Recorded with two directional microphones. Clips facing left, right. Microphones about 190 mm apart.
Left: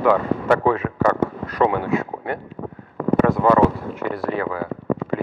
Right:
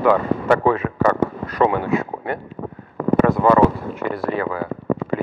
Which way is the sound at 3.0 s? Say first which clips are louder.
Right 1 dB; 20° right (ahead or behind).